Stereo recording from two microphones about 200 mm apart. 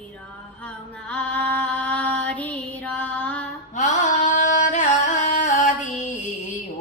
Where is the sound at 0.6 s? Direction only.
5° left (ahead or behind).